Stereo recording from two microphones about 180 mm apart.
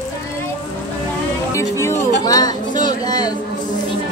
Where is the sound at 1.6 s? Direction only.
15° left (ahead or behind).